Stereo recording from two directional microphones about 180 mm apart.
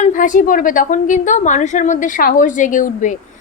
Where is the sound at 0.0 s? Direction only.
45° left (ahead or behind).